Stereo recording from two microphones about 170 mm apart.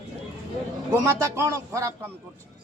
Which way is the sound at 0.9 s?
15° right (ahead or behind).